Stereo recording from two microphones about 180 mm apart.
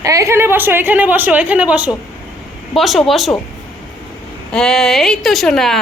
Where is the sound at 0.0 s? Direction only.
15° right (ahead or behind); by 3.3 s centre (ahead or behind).